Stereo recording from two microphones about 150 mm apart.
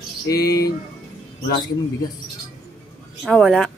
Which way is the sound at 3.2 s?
5° left (ahead or behind).